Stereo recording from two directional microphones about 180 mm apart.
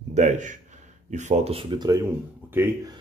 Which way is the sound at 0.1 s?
45° right (ahead or behind).